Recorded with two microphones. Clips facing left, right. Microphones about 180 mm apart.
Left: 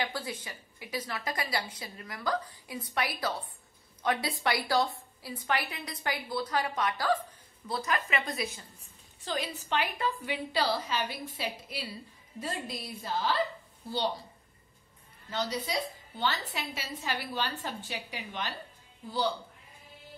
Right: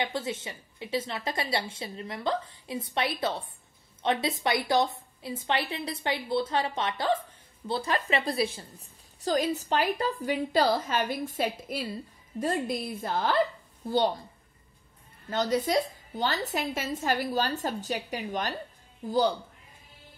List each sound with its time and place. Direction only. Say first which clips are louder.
0.0 s a woman's voice: right 4 dB; 25° right (ahead or behind)
9.2 s a woman's voice: right 8 dB; 40° right (ahead or behind)
15.2 s a woman's voice: right 7 dB; 45° right (ahead or behind)